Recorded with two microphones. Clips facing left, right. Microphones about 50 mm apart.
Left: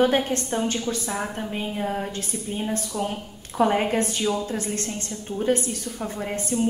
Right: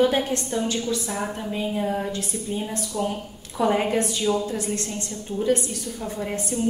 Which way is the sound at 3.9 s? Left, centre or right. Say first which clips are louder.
Even; left.